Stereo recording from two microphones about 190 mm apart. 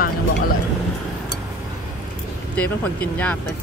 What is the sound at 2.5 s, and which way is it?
Speech, 10° left (ahead or behind).